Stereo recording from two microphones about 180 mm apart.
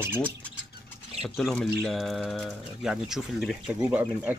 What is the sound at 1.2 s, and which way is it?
Speech, centre (ahead or behind).